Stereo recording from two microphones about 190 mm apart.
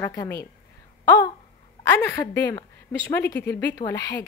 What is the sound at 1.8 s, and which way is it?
A woman's voice, 15° left (ahead or behind).